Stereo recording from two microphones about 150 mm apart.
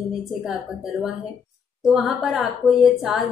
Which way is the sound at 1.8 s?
Centre (ahead or behind).